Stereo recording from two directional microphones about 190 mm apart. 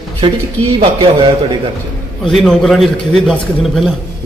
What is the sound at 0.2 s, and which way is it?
Speech, 25° right (ahead or behind).